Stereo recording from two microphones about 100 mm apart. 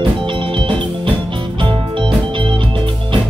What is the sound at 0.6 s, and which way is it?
Music, 55° right (ahead or behind).